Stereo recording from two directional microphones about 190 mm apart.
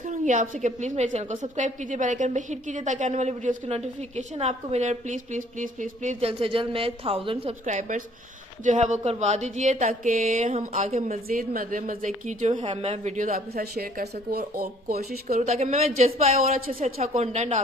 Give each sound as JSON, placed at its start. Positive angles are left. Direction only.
{"t": 0.1, "sound": "speech", "side_deg": -40}
{"t": 15.2, "sound": "speech", "side_deg": -40}
{"t": 16.5, "sound": "speech", "side_deg": -50}
{"t": 17.0, "sound": "speech", "side_deg": -35}